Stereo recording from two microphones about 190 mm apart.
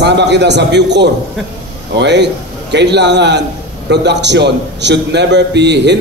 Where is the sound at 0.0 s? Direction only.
65° right (ahead or behind).